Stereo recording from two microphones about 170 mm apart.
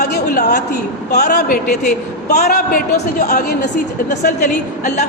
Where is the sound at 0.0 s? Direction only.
65° left (ahead or behind).